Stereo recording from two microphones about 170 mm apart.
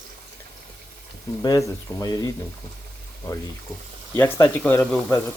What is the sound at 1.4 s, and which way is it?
Speech, 20° left (ahead or behind).